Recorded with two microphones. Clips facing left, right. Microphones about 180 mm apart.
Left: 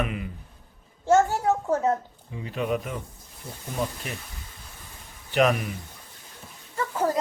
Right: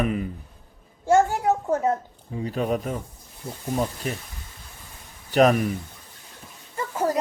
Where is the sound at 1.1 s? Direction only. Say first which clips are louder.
Right 1 dB; 15° right (ahead or behind).